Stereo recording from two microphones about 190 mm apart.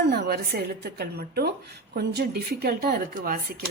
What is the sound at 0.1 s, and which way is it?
A woman's voice, 55° right (ahead or behind).